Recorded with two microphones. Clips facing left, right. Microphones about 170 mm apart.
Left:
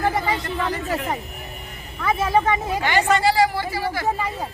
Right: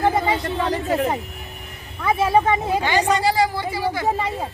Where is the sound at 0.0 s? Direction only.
25° right (ahead or behind).